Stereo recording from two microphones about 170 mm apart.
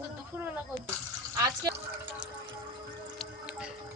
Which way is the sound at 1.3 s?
20° right (ahead or behind).